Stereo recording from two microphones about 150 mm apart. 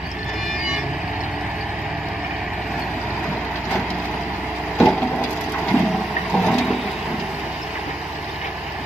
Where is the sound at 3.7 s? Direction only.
Centre (ahead or behind).